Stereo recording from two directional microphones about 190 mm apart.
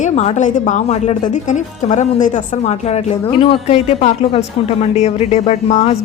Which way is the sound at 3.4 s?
30° left (ahead or behind).